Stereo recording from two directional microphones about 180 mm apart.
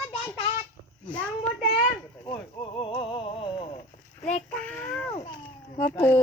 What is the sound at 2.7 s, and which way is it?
Music, 30° left (ahead or behind).